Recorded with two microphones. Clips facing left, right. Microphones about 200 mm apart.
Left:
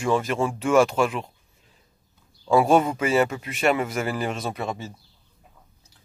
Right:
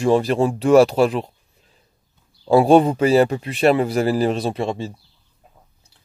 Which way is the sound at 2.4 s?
30° right (ahead or behind).